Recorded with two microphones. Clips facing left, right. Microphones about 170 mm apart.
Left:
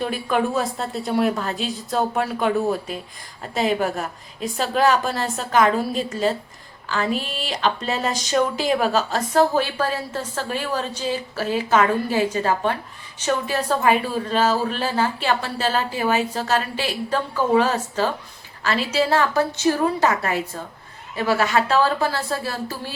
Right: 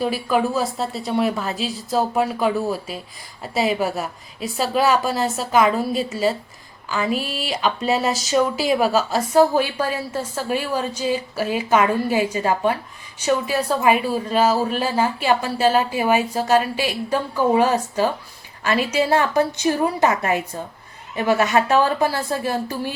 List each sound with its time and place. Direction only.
0.0 s a woman's voice: 5° right (ahead or behind)